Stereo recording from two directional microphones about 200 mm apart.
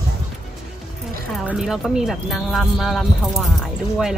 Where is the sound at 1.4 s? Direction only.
5° right (ahead or behind).